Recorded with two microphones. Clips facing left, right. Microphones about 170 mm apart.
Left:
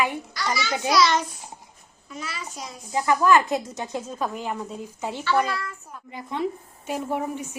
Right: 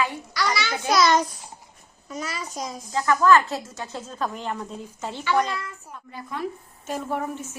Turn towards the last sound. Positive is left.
turn(degrees=15)  # may be behind; listen again after turning